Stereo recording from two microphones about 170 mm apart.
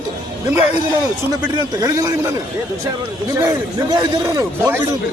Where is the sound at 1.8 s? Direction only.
20° right (ahead or behind).